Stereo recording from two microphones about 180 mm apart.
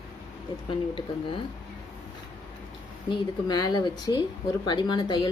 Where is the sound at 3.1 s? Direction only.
20° left (ahead or behind).